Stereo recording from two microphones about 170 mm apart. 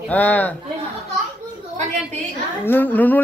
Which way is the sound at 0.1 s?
10° left (ahead or behind).